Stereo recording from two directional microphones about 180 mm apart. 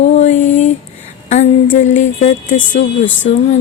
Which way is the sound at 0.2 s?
40° left (ahead or behind).